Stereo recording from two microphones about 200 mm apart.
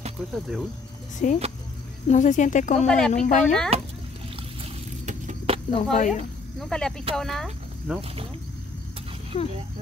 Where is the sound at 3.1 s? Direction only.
40° left (ahead or behind).